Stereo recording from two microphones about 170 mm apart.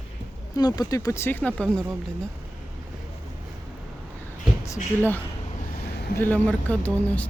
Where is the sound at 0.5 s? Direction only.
25° left (ahead or behind); by 1.8 s 5° left (ahead or behind).